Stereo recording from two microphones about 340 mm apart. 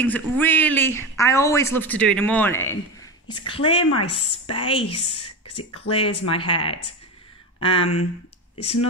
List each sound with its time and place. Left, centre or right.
0.0 s a woman's voice: centre